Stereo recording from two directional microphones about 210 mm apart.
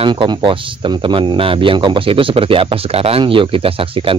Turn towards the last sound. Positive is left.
turn(degrees=-25)  # may be behind; listen again after turning